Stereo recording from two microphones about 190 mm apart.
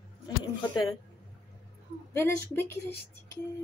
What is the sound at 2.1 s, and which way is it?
Speech, 15° left (ahead or behind).